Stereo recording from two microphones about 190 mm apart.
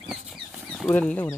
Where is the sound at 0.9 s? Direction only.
10° left (ahead or behind).